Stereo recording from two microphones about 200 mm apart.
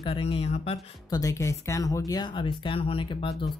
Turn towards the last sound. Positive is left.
turn(degrees=30)  # may be behind; listen again after turning